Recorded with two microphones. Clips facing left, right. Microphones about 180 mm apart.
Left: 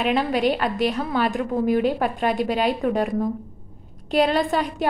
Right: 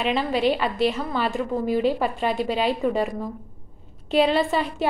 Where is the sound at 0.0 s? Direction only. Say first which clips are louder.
Left 1 dB; centre (ahead or behind).